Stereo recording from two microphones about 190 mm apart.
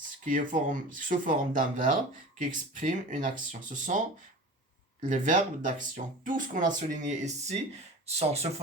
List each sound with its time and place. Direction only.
0.3 s speech: 45° right (ahead or behind)